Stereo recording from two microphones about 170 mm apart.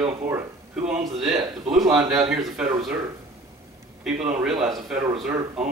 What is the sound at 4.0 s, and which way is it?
Speech, 5° right (ahead or behind).